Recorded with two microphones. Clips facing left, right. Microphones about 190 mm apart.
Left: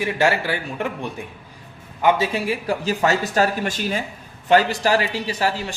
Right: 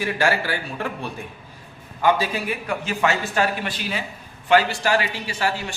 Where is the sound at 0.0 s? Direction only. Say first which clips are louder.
Left 2 dB; 20° left (ahead or behind).